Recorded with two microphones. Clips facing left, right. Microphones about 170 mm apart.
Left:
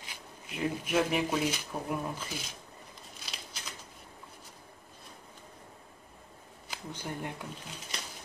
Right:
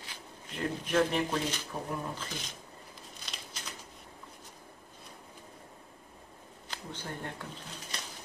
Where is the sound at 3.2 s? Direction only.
5° left (ahead or behind).